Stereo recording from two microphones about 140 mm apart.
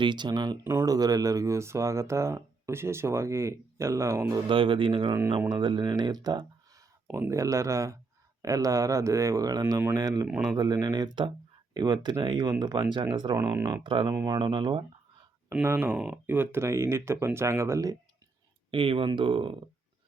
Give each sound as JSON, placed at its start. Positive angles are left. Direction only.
{"t": 0.0, "sound": "speech", "side_deg": -35}
{"t": 0.6, "sound": "speech", "side_deg": -20}
{"t": 4.4, "sound": "speech", "side_deg": -40}
{"t": 10.2, "sound": "speech", "side_deg": -5}
{"t": 10.6, "sound": "speech", "side_deg": -30}
{"t": 13.8, "sound": "speech", "side_deg": -35}
{"t": 14.1, "sound": "speech", "side_deg": -25}
{"t": 14.3, "sound": "speech", "side_deg": -35}
{"t": 15.6, "sound": "speech", "side_deg": -15}
{"t": 18.7, "sound": "speech", "side_deg": -40}